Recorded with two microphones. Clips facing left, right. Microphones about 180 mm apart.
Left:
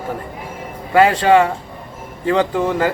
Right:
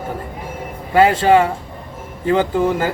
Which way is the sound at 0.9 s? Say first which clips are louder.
Even; 30° right (ahead or behind).